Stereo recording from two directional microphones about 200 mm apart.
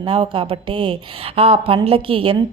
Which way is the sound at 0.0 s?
25° right (ahead or behind).